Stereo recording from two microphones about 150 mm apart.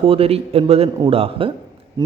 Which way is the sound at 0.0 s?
40° right (ahead or behind).